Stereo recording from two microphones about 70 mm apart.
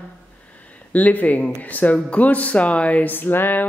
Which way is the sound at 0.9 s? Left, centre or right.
Left.